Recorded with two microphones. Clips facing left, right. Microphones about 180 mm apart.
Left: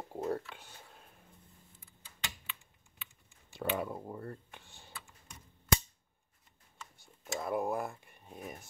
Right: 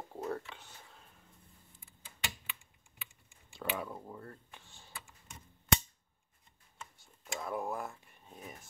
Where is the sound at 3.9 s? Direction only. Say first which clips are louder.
Left 4 dB; 20° left (ahead or behind).